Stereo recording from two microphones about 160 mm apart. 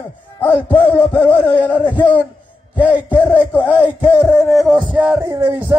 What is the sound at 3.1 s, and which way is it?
Music, 15° left (ahead or behind).